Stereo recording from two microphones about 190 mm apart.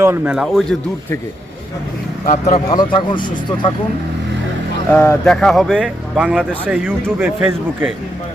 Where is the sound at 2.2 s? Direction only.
35° left (ahead or behind).